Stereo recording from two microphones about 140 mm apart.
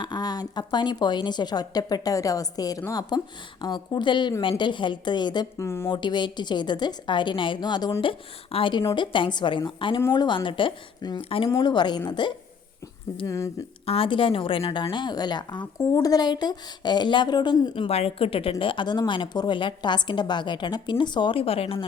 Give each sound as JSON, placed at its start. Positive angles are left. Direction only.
{"t": 0.0, "sound": "a woman's voice", "side_deg": 30}
{"t": 5.6, "sound": "a woman's voice", "side_deg": 20}
{"t": 5.9, "sound": "a woman's voice", "side_deg": 35}
{"t": 13.8, "sound": "a woman's voice", "side_deg": 40}